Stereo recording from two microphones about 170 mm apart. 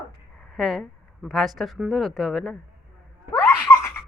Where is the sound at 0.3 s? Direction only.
Centre (ahead or behind).